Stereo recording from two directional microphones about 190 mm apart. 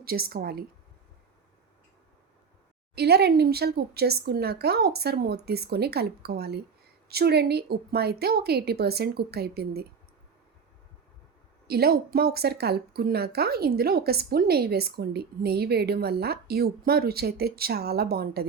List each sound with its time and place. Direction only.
0.0 s a woman's voice: 50° right (ahead or behind)
2.9 s speech: 60° right (ahead or behind)
11.7 s speech: 55° right (ahead or behind)